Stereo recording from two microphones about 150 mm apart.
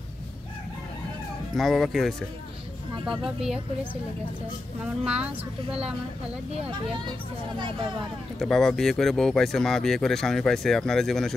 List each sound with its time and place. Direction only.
1.5 s speech: centre (ahead or behind)
5.0 s speech: 10° right (ahead or behind)
8.4 s speech: centre (ahead or behind)